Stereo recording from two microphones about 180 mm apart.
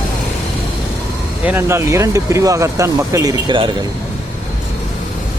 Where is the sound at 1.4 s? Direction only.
15° right (ahead or behind).